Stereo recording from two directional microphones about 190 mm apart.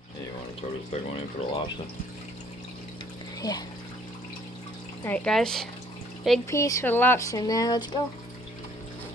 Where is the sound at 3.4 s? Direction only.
20° left (ahead or behind).